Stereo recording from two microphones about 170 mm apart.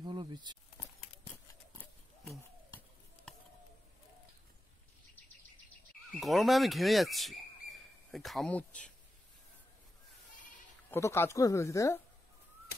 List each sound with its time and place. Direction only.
0.0 s speech: 25° right (ahead or behind)
6.1 s speech: centre (ahead or behind)
10.9 s speech: 15° left (ahead or behind)